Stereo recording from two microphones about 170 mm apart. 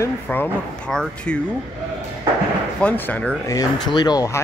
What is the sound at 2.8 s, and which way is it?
Speech, 10° left (ahead or behind).